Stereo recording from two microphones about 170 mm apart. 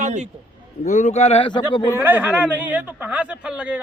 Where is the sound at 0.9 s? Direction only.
45° left (ahead or behind); by 2.0 s 25° left (ahead or behind).